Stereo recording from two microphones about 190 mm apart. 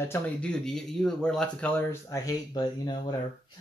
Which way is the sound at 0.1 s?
5° left (ahead or behind).